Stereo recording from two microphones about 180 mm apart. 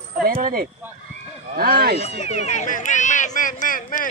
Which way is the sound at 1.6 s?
55° right (ahead or behind).